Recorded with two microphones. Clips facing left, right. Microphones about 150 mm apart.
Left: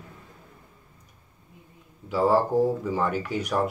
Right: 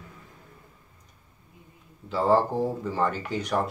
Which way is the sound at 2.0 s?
10° left (ahead or behind).